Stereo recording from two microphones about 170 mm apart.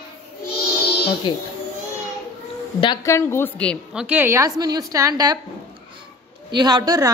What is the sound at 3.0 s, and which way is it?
Speech, 15° left (ahead or behind).